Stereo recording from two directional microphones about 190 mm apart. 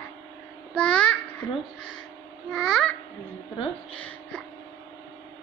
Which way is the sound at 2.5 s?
Centre (ahead or behind).